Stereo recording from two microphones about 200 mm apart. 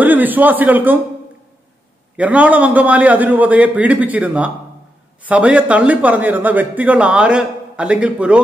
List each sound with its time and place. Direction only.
0.0 s a man's voice: 10° right (ahead or behind)
2.1 s speech: 5° right (ahead or behind)